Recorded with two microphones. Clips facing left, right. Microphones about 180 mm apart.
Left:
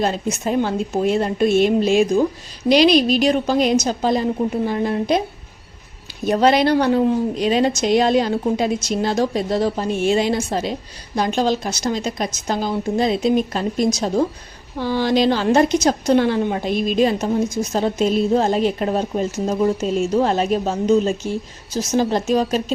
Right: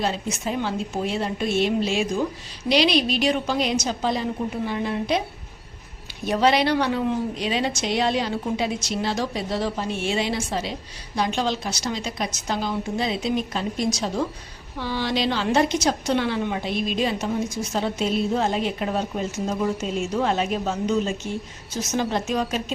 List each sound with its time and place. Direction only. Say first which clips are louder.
0.0 s a woman's voice: left 5 dB; 45° left (ahead or behind)
6.2 s a woman's voice: left 5 dB; 45° left (ahead or behind)